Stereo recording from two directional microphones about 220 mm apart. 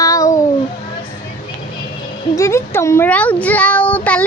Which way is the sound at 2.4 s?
15° left (ahead or behind).